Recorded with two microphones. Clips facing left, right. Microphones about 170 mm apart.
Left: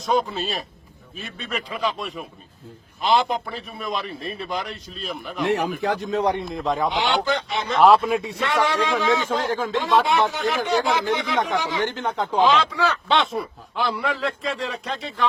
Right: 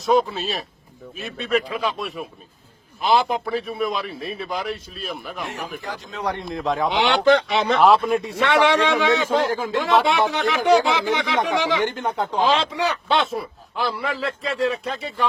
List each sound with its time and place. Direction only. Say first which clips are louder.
0.0 s a man's voice: right 3 dB; centre (ahead or behind)
5.5 s speech: left 9 dB; 70° left (ahead or behind)
6.4 s a man's voice: right 1 dB; centre (ahead or behind)
6.9 s speech: right 6 dB; 75° right (ahead or behind)
7.8 s a man's voice: left 2 dB; centre (ahead or behind)
8.4 s speech: right 7 dB; 70° right (ahead or behind)
9.5 s speech: even; 10° right (ahead or behind)
10.1 s speech: right 1 dB; 80° right
11.8 s speech: right 1 dB; 10° right (ahead or behind)
13.1 s a man's voice: even; centre (ahead or behind)